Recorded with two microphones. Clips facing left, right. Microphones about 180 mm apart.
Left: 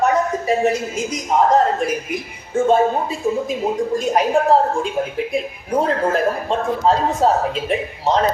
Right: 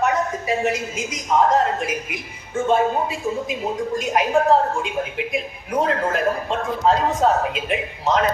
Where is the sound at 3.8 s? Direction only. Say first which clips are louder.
Left 2 dB; 35° left (ahead or behind).